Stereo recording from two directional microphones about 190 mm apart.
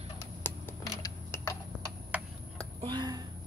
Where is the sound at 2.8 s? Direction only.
25° right (ahead or behind).